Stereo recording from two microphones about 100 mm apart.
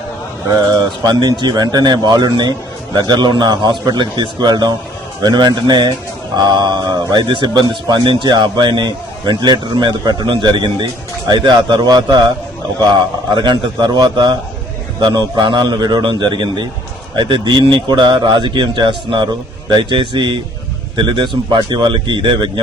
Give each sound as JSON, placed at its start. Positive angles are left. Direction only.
{"t": 0.5, "sound": "speech", "side_deg": -45}